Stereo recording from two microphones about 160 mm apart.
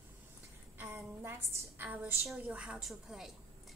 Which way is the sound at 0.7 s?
15° right (ahead or behind).